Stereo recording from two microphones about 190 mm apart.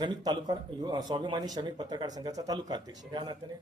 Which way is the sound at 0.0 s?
20° right (ahead or behind).